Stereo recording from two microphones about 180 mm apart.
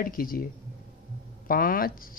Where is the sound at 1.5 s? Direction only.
50° left (ahead or behind).